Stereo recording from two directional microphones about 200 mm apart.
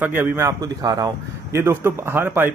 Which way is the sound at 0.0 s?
10° right (ahead or behind).